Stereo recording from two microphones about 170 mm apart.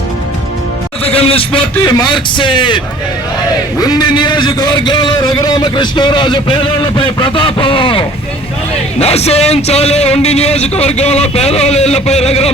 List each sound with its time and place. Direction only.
1.0 s a man's voice: 35° left (ahead or behind)